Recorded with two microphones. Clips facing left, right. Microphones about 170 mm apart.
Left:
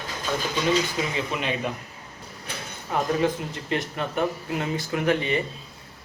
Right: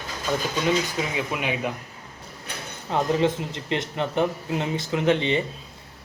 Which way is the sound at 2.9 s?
25° right (ahead or behind).